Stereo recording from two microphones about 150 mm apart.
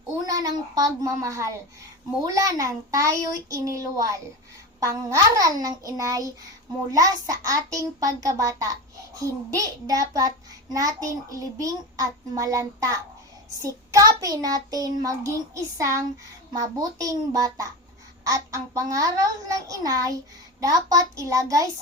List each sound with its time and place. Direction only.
0.3 s a child's voice: 25° right (ahead or behind)